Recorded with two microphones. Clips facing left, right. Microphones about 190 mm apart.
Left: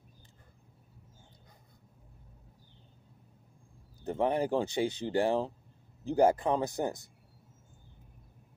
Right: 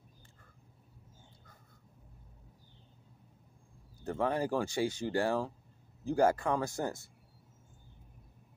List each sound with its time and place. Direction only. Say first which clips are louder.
4.0 s speech: left 3 dB; 20° left (ahead or behind)